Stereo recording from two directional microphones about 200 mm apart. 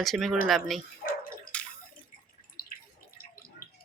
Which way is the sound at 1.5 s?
5° left (ahead or behind).